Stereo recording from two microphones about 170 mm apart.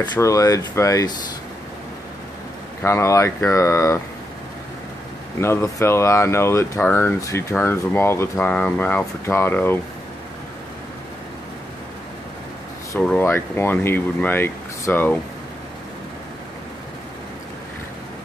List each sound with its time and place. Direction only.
0.0 s speech: 20° left (ahead or behind)
2.8 s speech: 15° left (ahead or behind)
5.4 s speech: 15° left (ahead or behind)
13.0 s speech: 10° left (ahead or behind)